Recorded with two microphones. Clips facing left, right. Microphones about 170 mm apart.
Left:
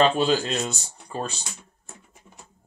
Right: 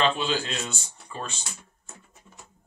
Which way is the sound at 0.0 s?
40° left (ahead or behind).